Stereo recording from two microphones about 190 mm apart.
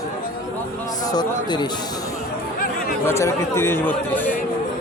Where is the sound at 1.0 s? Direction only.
20° left (ahead or behind).